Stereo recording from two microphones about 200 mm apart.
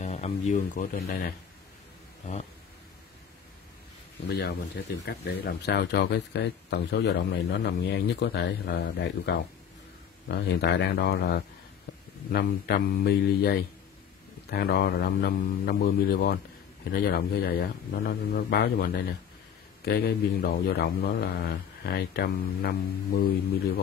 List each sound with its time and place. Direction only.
0.0 s speech: 35° left (ahead or behind)
4.3 s a man's voice: 55° left (ahead or behind)